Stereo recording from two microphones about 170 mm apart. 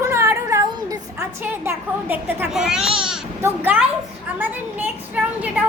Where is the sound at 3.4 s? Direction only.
10° right (ahead or behind).